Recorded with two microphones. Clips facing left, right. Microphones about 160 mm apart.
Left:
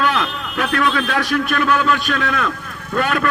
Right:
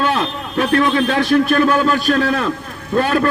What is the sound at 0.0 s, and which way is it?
A man's voice, 30° right (ahead or behind).